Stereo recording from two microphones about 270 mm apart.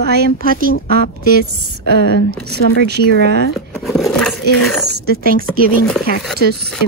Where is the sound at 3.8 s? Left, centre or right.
Centre.